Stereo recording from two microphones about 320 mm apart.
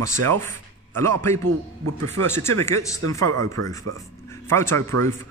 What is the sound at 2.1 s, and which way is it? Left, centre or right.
A man's voice, centre.